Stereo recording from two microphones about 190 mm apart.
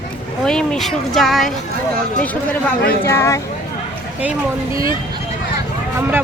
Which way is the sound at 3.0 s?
15° left (ahead or behind).